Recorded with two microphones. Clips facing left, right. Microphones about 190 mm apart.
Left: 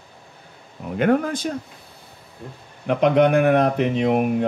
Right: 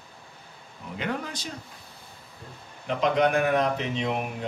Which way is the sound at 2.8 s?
60° left (ahead or behind).